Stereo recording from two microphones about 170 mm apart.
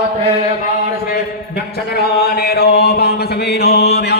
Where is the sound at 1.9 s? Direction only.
65° left (ahead or behind).